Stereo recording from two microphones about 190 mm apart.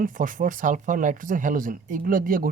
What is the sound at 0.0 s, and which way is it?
Speech, 45° right (ahead or behind).